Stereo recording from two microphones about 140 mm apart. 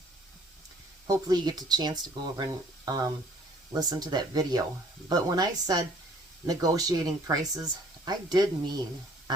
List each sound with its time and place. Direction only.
1.0 s speech: 25° right (ahead or behind)